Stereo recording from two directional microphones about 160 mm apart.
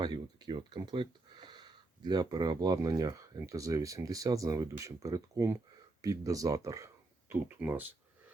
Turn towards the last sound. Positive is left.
turn(degrees=-10)  # may be behind; listen again after turning